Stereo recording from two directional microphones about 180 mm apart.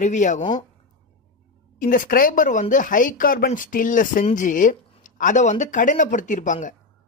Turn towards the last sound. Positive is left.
turn(degrees=45)  # may be behind; listen again after turning